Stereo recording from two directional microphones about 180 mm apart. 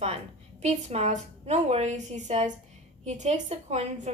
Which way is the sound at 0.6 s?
35° right (ahead or behind).